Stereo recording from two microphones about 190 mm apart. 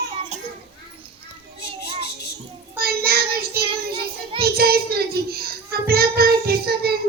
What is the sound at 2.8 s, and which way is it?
Child singing, 55° right (ahead or behind).